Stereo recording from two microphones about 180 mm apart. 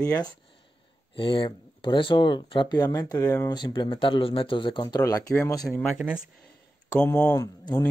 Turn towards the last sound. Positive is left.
turn(degrees=20)  # may be behind; listen again after turning